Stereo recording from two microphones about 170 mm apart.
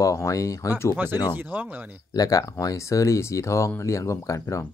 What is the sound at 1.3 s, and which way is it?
Speech, 10° right (ahead or behind).